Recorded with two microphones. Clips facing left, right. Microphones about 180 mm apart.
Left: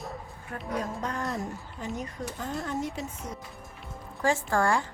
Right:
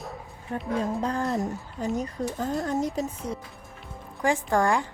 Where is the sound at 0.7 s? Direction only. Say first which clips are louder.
Right 5 dB; 30° right (ahead or behind).